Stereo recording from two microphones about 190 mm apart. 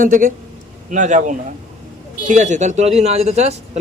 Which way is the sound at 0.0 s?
45° right (ahead or behind).